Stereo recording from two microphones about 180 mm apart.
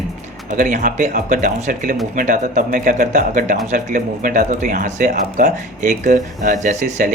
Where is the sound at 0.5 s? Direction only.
45° right (ahead or behind).